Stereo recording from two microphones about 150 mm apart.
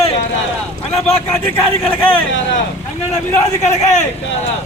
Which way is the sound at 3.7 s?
50° left (ahead or behind).